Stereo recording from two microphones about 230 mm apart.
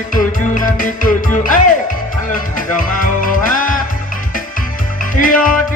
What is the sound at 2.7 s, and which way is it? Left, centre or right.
Music, left.